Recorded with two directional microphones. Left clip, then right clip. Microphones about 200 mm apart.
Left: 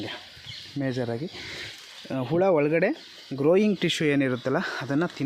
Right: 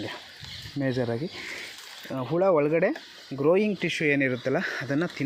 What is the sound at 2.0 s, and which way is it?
Speech, 35° left (ahead or behind).